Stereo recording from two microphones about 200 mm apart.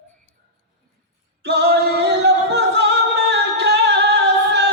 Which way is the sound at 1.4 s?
55° right (ahead or behind).